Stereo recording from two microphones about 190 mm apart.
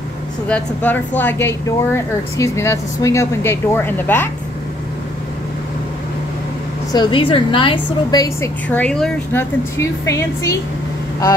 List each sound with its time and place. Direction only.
0.5 s speech: 10° left (ahead or behind)
6.9 s a woman's voice: 25° left (ahead or behind)
8.6 s speech: 5° left (ahead or behind)